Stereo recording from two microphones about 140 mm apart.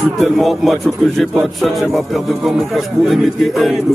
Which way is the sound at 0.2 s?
Centre (ahead or behind).